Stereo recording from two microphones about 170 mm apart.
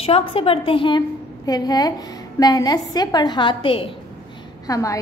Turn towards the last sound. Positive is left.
turn(degrees=20)  # may be behind; listen again after turning